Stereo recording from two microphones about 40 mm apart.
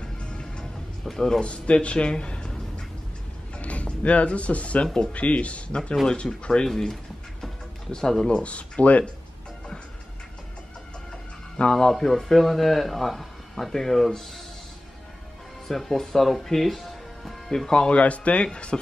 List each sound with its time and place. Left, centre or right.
0.0 s music: left
1.0 s speech: centre
1.4 s a man's voice: left
6.4 s speech: centre
8.3 s speech: left
11.6 s speech: left
11.9 s speech: centre
15.7 s speech: centre
17.8 s speech: left